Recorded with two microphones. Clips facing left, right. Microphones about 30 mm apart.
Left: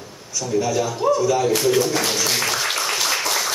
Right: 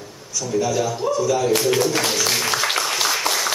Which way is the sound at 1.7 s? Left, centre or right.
Centre.